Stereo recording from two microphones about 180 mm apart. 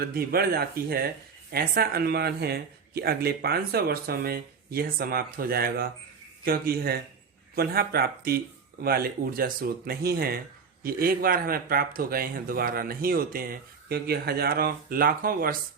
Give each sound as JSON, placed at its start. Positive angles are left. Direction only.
{"t": 0.0, "sound": "speech", "side_deg": -55}